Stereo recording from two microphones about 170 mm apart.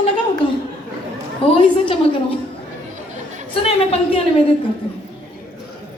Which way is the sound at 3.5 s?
35° left (ahead or behind).